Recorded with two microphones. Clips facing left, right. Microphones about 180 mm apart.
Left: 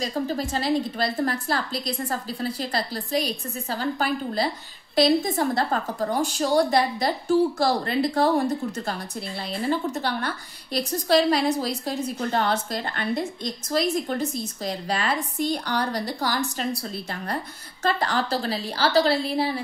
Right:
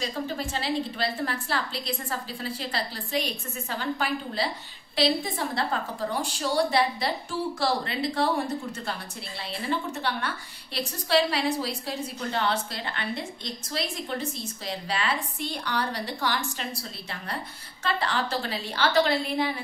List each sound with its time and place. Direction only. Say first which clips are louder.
0.0 s a woman's voice: left 4 dB; 40° left (ahead or behind)
9.7 s a woman's voice: left 4 dB; 40° left (ahead or behind)
17.8 s a woman's voice: left 4 dB; 40° left (ahead or behind)